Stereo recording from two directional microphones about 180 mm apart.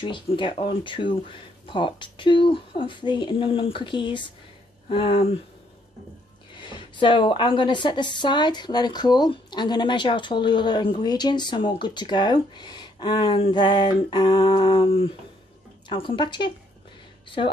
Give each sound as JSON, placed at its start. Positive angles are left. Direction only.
{"t": 0.0, "sound": "a woman's voice", "side_deg": 25}
{"t": 4.8, "sound": "a sound", "side_deg": 30}
{"t": 6.5, "sound": "a woman's voice", "side_deg": 25}